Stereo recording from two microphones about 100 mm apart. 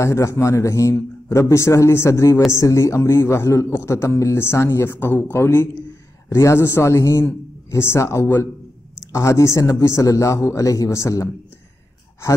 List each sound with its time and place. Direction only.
0.0 s a man's voice: 30° left (ahead or behind)